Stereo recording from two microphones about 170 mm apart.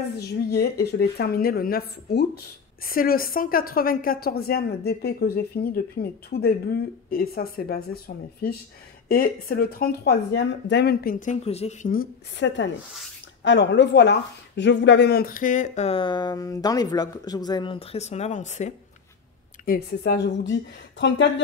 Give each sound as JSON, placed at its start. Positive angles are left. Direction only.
{"t": 0.5, "sound": "speech", "side_deg": 70}
{"t": 11.1, "sound": "speech", "side_deg": 45}
{"t": 11.9, "sound": "a woman's voice", "side_deg": 75}
{"t": 19.6, "sound": "a woman's voice", "side_deg": 65}